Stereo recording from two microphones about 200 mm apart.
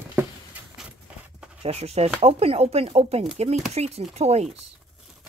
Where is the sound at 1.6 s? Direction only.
30° right (ahead or behind).